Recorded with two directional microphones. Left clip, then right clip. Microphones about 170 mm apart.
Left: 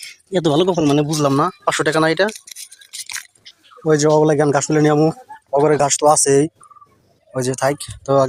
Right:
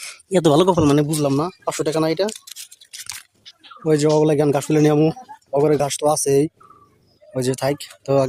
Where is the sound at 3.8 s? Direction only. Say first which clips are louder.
Left 3 dB; 5° right (ahead or behind).